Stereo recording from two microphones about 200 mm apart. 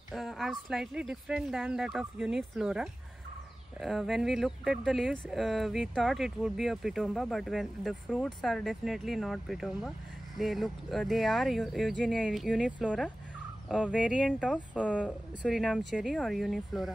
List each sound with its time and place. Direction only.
0.1 s speech: centre (ahead or behind)
14.9 s speech: 5° left (ahead or behind)